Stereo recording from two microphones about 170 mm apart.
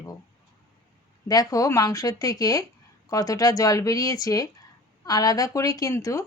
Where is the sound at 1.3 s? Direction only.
20° left (ahead or behind).